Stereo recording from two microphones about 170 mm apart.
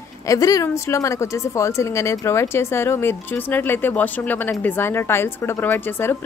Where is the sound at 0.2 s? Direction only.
20° left (ahead or behind).